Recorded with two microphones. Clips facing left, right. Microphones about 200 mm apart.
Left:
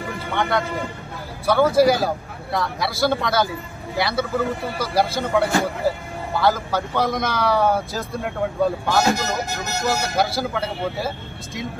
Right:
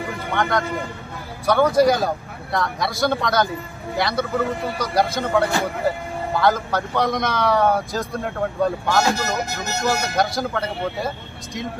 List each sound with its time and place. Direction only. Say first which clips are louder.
0.3 s a man's voice: even; centre (ahead or behind)
9.0 s speech: left 1 dB; 15° left (ahead or behind)
9.8 s a man's voice: even; centre (ahead or behind)